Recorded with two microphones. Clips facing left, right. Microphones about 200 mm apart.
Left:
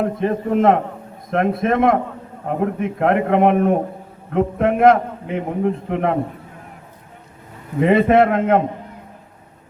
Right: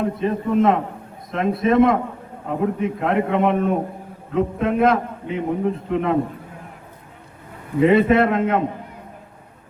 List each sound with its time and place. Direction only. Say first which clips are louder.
0.0 s a man's voice: left 2 dB; 60° left (ahead or behind)
7.8 s a man's voice: left 1 dB; 55° left (ahead or behind)